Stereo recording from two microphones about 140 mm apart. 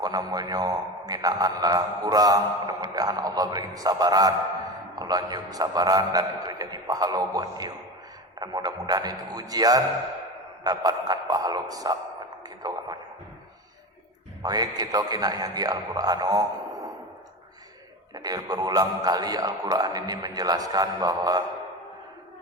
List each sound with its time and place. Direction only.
0.0 s a man's voice: 25° right (ahead or behind)
12.4 s a sound: 30° right (ahead or behind)
14.4 s a man's voice: 30° right (ahead or behind)
18.1 s a man's voice: 30° right (ahead or behind)